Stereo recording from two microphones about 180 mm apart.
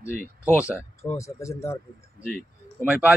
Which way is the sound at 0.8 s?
15° left (ahead or behind).